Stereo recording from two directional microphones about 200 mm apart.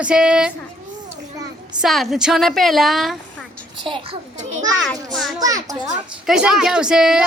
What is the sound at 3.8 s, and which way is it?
Speech, 25° right (ahead or behind).